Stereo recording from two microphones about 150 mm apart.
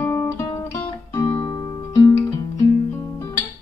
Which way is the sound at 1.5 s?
20° left (ahead or behind).